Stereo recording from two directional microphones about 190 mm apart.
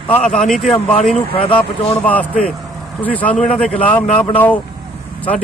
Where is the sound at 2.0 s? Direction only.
10° left (ahead or behind).